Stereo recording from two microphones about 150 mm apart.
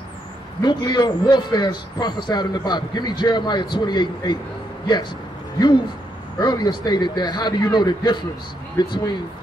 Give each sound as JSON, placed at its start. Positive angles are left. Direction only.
{"t": 0.6, "sound": "a man's voice", "side_deg": 30}
{"t": 6.4, "sound": "a man's voice", "side_deg": 30}